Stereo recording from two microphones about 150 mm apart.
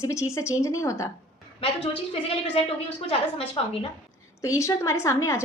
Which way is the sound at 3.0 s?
40° left (ahead or behind).